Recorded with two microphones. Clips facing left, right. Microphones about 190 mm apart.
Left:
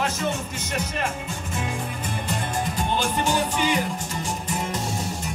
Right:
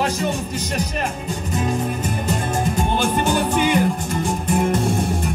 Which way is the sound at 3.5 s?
55° right (ahead or behind).